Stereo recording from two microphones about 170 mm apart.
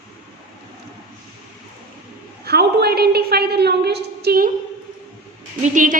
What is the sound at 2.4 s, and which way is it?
A woman's voice, 70° right (ahead or behind).